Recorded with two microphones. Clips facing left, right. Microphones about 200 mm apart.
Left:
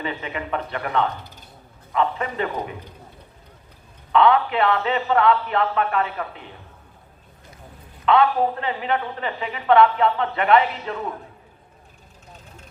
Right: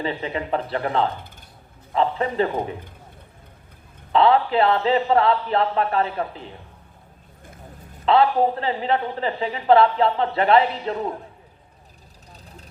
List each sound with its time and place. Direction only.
0.0 s a woman's voice: 30° right (ahead or behind)
4.1 s a woman's voice: 30° right (ahead or behind)
8.0 s a woman's voice: 30° right (ahead or behind)
12.3 s vehicle: 35° right (ahead or behind)